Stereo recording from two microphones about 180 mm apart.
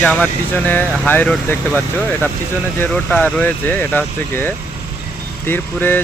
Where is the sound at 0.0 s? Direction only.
10° left (ahead or behind).